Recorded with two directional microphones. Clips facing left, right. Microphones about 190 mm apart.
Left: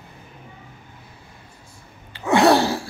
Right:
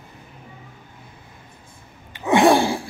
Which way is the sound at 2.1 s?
15° right (ahead or behind).